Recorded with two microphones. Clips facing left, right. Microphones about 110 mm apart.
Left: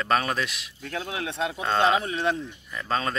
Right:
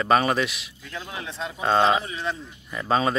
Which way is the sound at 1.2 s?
60° left (ahead or behind).